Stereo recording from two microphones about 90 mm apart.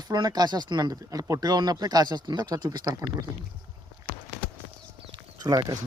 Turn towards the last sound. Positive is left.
turn(degrees=-45)  # may be behind; listen again after turning